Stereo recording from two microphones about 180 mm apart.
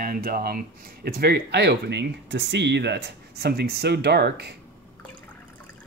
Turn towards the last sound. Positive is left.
turn(degrees=-65)  # may be behind; listen again after turning